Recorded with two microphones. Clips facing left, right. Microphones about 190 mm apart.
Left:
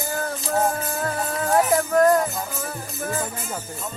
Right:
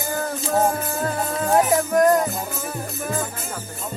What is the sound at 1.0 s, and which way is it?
Music, 20° right (ahead or behind).